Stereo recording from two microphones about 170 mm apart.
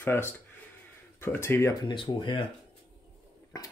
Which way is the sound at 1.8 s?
30° left (ahead or behind).